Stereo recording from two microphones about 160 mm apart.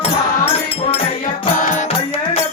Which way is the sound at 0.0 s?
35° left (ahead or behind).